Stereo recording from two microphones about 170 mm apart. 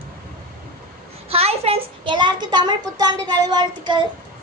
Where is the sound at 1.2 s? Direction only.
35° right (ahead or behind).